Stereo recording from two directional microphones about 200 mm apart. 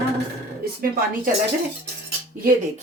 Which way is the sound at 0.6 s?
45° right (ahead or behind).